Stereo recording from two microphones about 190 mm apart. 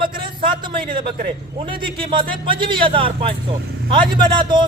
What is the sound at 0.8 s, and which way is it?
Speech, 45° right (ahead or behind).